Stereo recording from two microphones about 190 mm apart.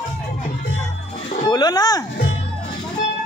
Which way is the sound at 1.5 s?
20° left (ahead or behind).